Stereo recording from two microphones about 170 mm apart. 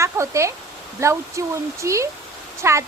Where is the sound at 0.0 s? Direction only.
15° right (ahead or behind).